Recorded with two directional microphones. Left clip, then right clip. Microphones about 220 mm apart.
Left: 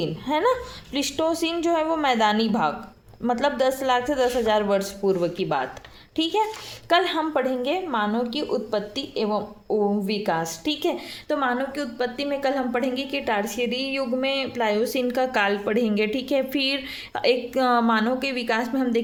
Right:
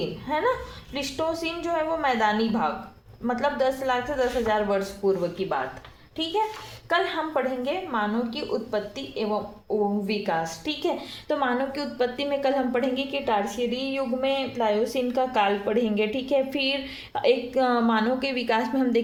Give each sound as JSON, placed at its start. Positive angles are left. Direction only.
{"t": 0.0, "sound": "a woman's voice", "side_deg": 35}
{"t": 6.8, "sound": "a woman's voice", "side_deg": 40}